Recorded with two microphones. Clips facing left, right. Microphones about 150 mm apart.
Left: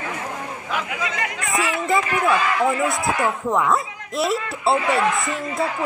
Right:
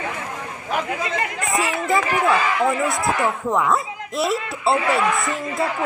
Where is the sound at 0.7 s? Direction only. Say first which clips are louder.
Right 3 dB; 40° right (ahead or behind).